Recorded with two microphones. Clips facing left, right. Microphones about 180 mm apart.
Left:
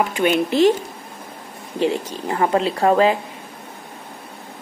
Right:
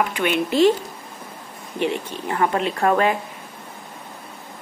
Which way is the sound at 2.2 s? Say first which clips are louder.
Left 2 dB; 25° left (ahead or behind).